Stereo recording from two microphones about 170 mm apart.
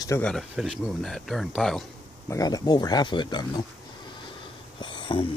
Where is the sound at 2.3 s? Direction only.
20° left (ahead or behind).